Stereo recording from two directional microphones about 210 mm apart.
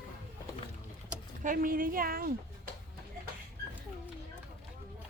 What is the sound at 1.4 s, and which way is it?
Speech, 40° right (ahead or behind).